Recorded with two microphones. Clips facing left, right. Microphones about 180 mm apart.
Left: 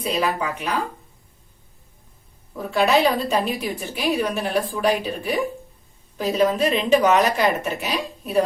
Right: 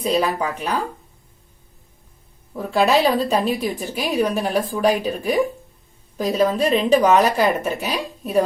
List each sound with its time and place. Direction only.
0.0 s a woman's voice: 35° right (ahead or behind)
2.6 s a woman's voice: 35° right (ahead or behind)